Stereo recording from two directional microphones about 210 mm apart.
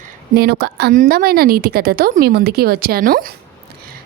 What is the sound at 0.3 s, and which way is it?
A woman's voice, 50° right (ahead or behind).